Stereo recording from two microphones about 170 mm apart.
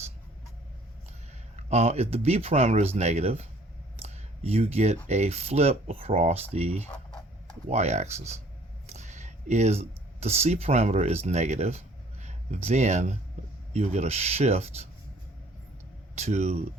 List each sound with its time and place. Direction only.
1.5 s speech: 40° right (ahead or behind)
3.9 s a sound: 35° right (ahead or behind)
5.0 s speech: 40° right (ahead or behind)
6.8 s a sound: 5° left (ahead or behind)
7.7 s speech: 40° right (ahead or behind)
16.1 s speech: 40° right (ahead or behind)